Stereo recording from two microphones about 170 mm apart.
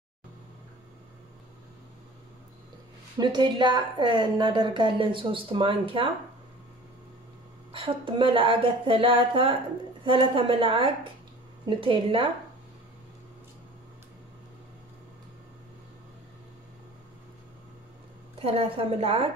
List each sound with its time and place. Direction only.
3.2 s a woman's voice: 25° right (ahead or behind)
7.7 s speech: 30° right (ahead or behind)
18.4 s speech: 35° right (ahead or behind)